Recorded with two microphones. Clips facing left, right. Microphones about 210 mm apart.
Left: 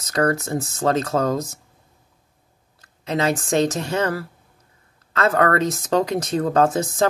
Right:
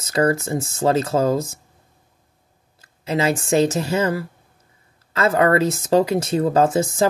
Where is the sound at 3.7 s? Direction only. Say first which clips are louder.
Right 2 dB; 5° right (ahead or behind).